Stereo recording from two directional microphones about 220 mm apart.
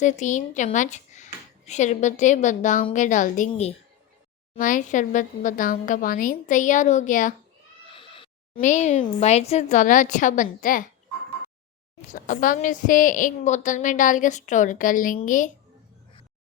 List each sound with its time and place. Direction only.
0.0 s a woman's voice: 35° left (ahead or behind)
7.9 s cat: 25° left (ahead or behind)
8.6 s a woman's voice: 35° left (ahead or behind)
12.1 s a woman's voice: 35° left (ahead or behind)